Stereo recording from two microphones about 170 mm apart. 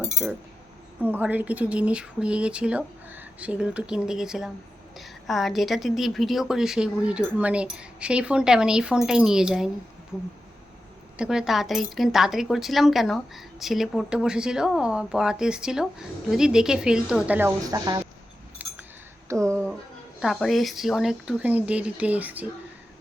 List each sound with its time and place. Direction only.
1.0 s a woman's voice: 10° right (ahead or behind)
11.2 s a woman's voice: 5° right (ahead or behind)
17.7 s speech: 20° right (ahead or behind)
18.6 s a sound: 10° right (ahead or behind)
20.1 s a woman's voice: 5° right (ahead or behind)